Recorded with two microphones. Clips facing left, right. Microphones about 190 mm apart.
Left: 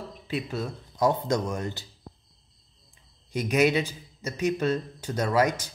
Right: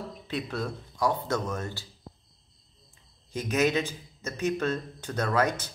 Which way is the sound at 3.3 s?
10° left (ahead or behind).